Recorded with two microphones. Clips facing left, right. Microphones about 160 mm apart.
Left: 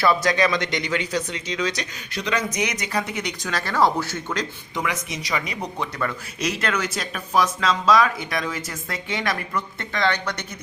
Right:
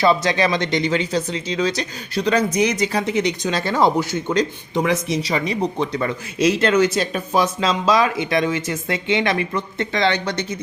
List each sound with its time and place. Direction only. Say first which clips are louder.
0.0 s speech: right 3 dB; 25° right (ahead or behind)
4.8 s speech: right 8 dB; 30° right (ahead or behind)